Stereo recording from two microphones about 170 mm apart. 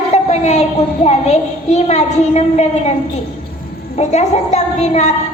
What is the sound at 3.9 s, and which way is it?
A woman's voice, 40° left (ahead or behind).